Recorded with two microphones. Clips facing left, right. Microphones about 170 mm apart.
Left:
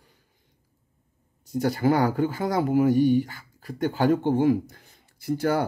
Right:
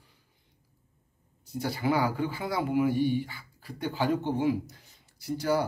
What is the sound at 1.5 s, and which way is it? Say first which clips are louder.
A man's voice: left 6 dB; 45° left (ahead or behind).